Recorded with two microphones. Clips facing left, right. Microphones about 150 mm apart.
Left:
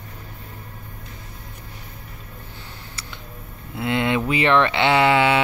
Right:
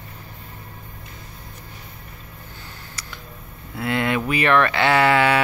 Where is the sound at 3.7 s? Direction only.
20° left (ahead or behind).